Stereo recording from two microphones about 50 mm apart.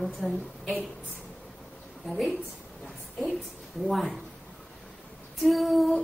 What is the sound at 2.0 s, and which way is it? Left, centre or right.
Speech, centre.